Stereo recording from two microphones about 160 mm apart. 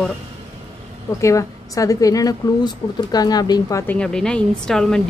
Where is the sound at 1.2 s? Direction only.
20° left (ahead or behind).